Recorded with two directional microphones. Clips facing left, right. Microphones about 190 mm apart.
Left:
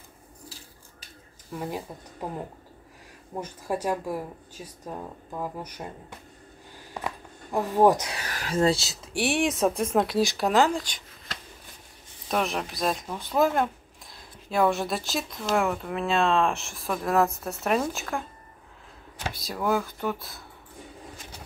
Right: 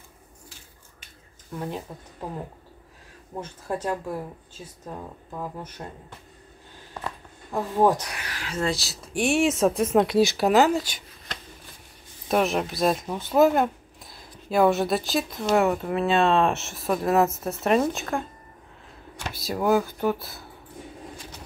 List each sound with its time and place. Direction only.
0.5 s a sound: 35° left (ahead or behind)
1.5 s speech: 5° left (ahead or behind)
3.3 s speech: 10° left (ahead or behind)
6.9 s a sound: 10° left (ahead or behind)
8.3 s speech: 40° left (ahead or behind)
9.3 s speech: centre (ahead or behind)
19.3 s speech: 5° right (ahead or behind)